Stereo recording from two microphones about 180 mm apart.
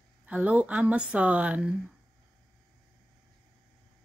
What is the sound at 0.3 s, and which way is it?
Speech, 10° right (ahead or behind).